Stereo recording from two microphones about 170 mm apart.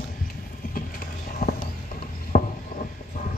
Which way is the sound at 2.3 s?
50° left (ahead or behind).